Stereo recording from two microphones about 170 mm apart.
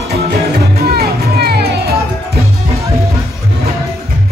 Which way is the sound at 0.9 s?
65° right (ahead or behind).